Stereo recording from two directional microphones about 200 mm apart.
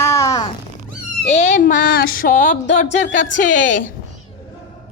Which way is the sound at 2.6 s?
65° left (ahead or behind).